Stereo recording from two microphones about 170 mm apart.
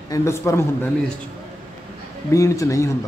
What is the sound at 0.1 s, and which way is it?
Speech, 15° left (ahead or behind).